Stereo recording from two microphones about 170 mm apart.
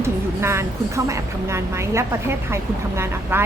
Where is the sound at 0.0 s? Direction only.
15° right (ahead or behind).